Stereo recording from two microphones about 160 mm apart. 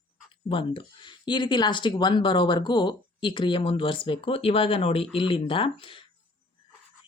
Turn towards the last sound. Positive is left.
turn(degrees=35)  # may be behind; listen again after turning